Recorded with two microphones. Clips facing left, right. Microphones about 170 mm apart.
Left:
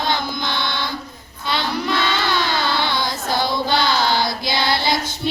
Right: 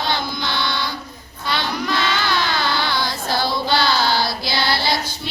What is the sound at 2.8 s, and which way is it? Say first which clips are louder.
Child singing: left 1 dB; 20° left (ahead or behind).